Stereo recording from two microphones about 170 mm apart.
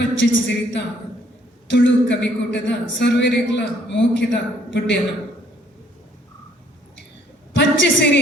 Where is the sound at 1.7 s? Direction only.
90° left.